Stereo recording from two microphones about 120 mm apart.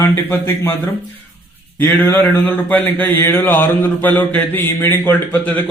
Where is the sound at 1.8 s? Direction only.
20° left (ahead or behind).